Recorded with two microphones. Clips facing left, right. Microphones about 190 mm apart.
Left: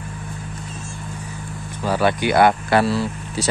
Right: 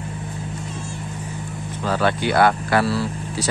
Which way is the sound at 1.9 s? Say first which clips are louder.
Left 2 dB; 10° left (ahead or behind).